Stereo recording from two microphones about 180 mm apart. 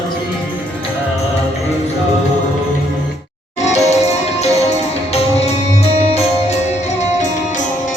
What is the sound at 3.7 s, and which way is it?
Music, 35° left (ahead or behind).